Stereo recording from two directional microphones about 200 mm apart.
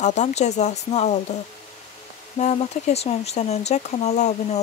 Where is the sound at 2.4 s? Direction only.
35° left (ahead or behind).